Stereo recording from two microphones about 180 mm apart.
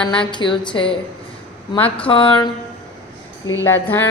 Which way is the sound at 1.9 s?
30° left (ahead or behind).